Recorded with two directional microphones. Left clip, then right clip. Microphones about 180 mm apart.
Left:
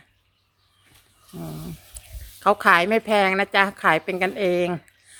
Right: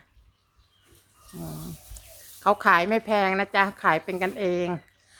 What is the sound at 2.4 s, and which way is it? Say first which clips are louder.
A woman's voice: left 3 dB; 15° left (ahead or behind).